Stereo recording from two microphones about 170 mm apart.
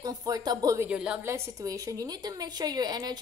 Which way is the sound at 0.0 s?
20° right (ahead or behind).